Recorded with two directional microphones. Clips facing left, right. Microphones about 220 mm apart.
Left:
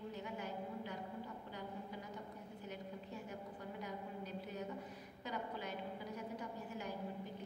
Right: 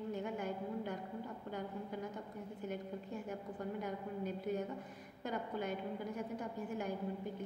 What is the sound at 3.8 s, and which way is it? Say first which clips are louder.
A woman's voice: right 5 dB; 50° right (ahead or behind).